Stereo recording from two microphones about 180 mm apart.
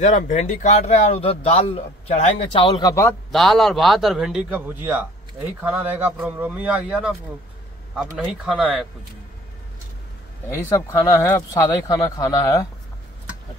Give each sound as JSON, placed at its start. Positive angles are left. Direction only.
{"t": 0.0, "sound": "speech", "side_deg": 40}
{"t": 3.3, "sound": "a man's voice", "side_deg": 0}
{"t": 8.2, "sound": "speech", "side_deg": -5}
{"t": 10.9, "sound": "speech", "side_deg": 15}